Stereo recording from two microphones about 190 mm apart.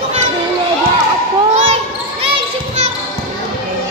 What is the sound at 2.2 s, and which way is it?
Basketball bounce, 30° right (ahead or behind).